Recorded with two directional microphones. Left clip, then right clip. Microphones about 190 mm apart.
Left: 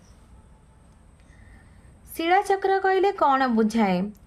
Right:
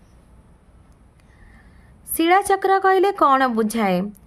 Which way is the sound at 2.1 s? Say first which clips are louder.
Right 5 dB; 40° right (ahead or behind).